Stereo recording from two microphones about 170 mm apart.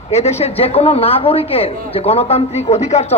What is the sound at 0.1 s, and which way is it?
Speech, 40° left (ahead or behind).